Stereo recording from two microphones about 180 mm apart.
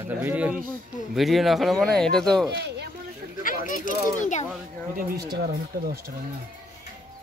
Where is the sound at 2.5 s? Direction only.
70° right (ahead or behind).